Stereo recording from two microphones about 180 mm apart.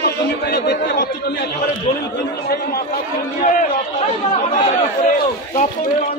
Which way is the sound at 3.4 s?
45° left (ahead or behind).